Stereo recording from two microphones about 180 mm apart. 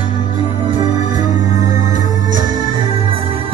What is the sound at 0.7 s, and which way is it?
Music, 25° right (ahead or behind).